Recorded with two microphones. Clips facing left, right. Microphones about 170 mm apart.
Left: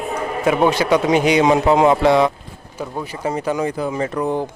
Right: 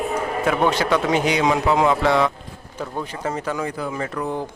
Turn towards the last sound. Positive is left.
turn(degrees=20)  # may be behind; listen again after turning